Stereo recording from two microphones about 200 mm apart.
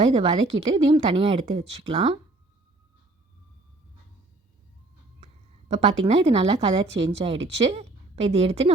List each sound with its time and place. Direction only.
0.0 s speech: 30° right (ahead or behind)
5.2 s a woman's voice: 35° right (ahead or behind)